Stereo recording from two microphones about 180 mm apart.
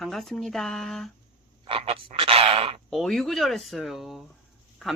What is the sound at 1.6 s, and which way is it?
Frog, 30° right (ahead or behind).